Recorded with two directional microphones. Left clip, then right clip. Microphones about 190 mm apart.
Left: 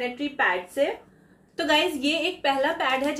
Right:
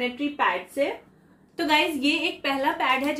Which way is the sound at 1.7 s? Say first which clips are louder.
Right 1 dB; 5° right (ahead or behind).